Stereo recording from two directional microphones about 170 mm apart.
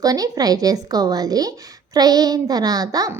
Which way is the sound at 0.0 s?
20° right (ahead or behind).